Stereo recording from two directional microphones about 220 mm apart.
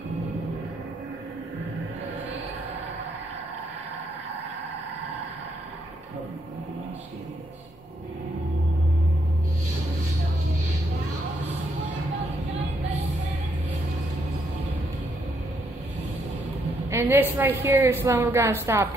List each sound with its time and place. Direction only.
16.9 s a woman's voice: 10° right (ahead or behind)